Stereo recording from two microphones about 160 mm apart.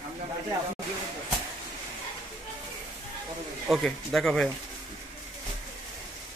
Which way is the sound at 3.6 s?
Centre (ahead or behind).